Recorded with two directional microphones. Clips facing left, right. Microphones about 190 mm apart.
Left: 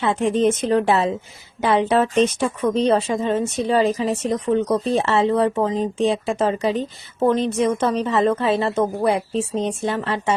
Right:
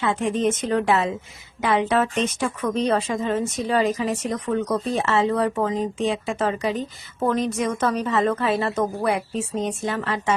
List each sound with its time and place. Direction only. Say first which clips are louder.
0.0 s speech: left 4 dB; 30° left (ahead or behind)